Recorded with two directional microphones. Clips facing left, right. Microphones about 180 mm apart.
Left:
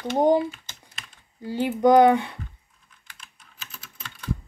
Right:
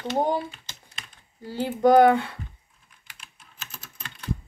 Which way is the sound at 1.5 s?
20° left (ahead or behind).